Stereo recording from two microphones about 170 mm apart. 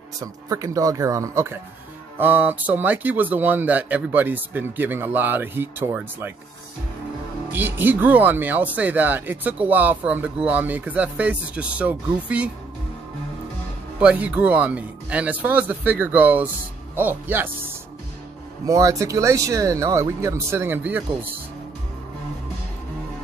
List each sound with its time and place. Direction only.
0.2 s speech: 20° right (ahead or behind)
7.5 s speech: 10° right (ahead or behind)
13.9 s speech: 10° right (ahead or behind)
18.7 s speech: 20° right (ahead or behind)